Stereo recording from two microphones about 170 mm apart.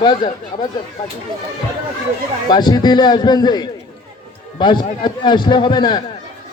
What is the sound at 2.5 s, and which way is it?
A man's voice, 25° left (ahead or behind).